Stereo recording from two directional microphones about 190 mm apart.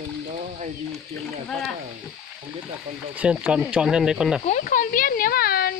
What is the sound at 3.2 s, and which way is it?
Speech, 5° right (ahead or behind).